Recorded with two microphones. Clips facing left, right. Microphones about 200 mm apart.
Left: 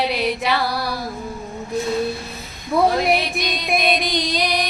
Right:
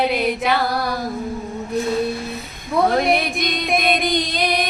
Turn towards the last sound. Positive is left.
turn(degrees=-50)  # may be behind; listen again after turning